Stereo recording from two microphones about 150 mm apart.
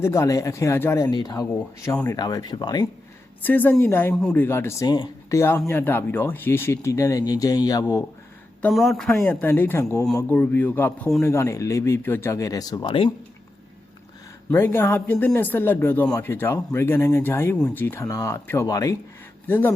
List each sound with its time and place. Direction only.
0.0 s speech: 20° left (ahead or behind)
1.1 s speech: 25° left (ahead or behind)
3.4 s speech: 10° left (ahead or behind)
4.1 s speech: 5° left (ahead or behind); by 8.0 s 20° left (ahead or behind)
8.7 s speech: centre (ahead or behind); by 12.8 s 25° left (ahead or behind)
12.8 s speech: 35° left (ahead or behind)
14.5 s speech: 15° left (ahead or behind)